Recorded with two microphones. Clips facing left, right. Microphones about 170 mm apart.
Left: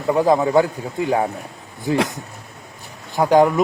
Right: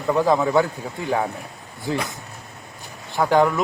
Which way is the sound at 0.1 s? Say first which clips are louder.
Left 3 dB; 20° left (ahead or behind).